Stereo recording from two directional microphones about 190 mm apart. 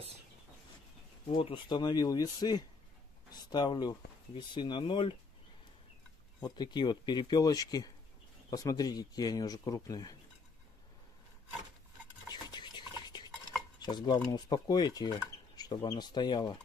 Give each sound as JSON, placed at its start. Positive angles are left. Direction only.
{"t": 1.3, "sound": "speech", "side_deg": 25}
{"t": 6.4, "sound": "speech", "side_deg": 20}
{"t": 12.4, "sound": "stir", "side_deg": 20}
{"t": 14.3, "sound": "speech", "side_deg": 20}